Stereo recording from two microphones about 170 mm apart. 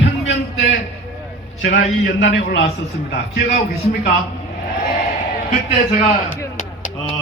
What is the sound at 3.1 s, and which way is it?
Speech, 65° left (ahead or behind).